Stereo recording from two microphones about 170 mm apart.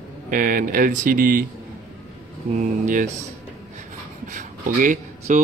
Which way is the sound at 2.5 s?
45° right (ahead or behind).